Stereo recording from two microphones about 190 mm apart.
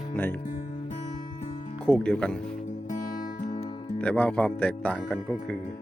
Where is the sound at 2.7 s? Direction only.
40° left (ahead or behind).